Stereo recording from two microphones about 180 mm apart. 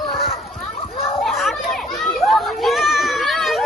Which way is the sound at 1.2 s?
Centre (ahead or behind).